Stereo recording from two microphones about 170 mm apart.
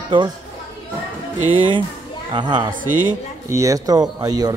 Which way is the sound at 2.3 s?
25° right (ahead or behind).